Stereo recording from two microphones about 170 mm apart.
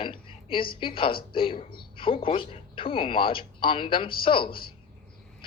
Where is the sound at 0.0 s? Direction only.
30° left (ahead or behind).